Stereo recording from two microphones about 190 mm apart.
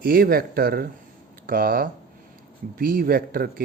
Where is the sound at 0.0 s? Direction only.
50° right (ahead or behind).